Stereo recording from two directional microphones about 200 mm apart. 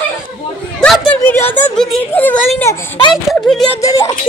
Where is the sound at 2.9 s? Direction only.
25° left (ahead or behind).